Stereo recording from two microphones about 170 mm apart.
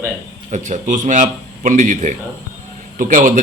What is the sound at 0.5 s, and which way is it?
A man's voice, 45° right (ahead or behind).